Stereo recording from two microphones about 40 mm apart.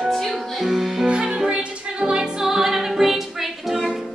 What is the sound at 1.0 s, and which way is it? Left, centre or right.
Music, right.